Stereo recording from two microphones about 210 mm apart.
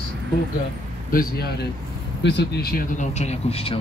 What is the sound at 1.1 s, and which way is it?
Speech, 45° left (ahead or behind).